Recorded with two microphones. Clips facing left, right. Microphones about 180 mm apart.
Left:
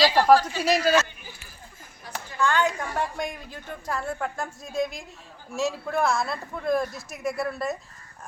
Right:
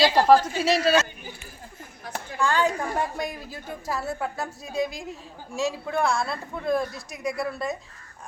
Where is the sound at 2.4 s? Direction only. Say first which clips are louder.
Even; 35° right (ahead or behind).